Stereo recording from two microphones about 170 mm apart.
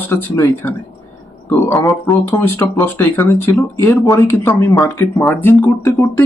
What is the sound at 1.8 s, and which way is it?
Speech, 10° left (ahead or behind).